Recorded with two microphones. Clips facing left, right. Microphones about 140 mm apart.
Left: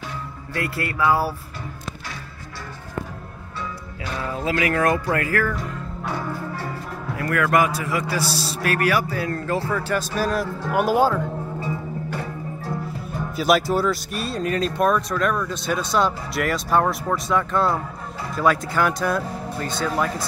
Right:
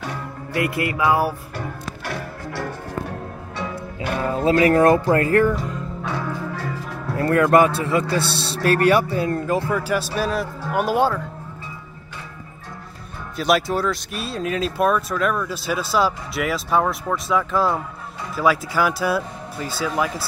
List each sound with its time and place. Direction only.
0.6 s music: 15° right (ahead or behind)
3.5 s music: 60° right (ahead or behind)
4.5 s speech: 35° right (ahead or behind)
6.0 s music: 5° left (ahead or behind)
7.2 s a man's voice: 30° right (ahead or behind); by 11.2 s 5° left (ahead or behind)
11.6 s music: 45° left (ahead or behind)
13.4 s speech: centre (ahead or behind)